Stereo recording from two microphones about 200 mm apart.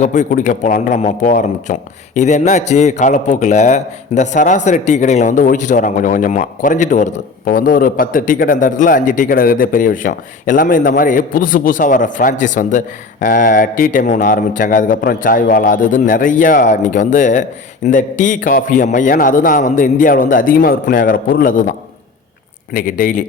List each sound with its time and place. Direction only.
0.0 s a man's voice: 40° left (ahead or behind)
22.7 s a man's voice: 40° left (ahead or behind)